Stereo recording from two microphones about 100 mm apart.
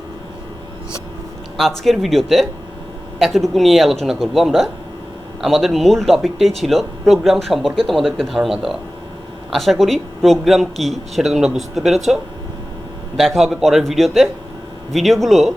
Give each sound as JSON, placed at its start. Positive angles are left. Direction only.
{"t": 1.8, "sound": "speech", "side_deg": 0}